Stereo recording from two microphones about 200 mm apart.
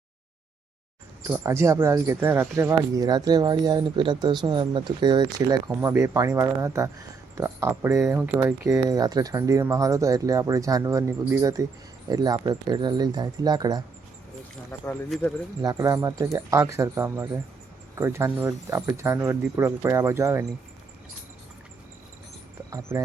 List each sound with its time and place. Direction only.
1.3 s speech: 15° right (ahead or behind)
14.7 s speech: 10° left (ahead or behind)
15.6 s speech: 15° right (ahead or behind)
22.9 s speech: 10° right (ahead or behind)